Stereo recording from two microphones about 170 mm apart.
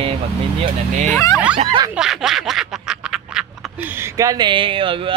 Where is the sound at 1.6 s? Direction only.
30° right (ahead or behind).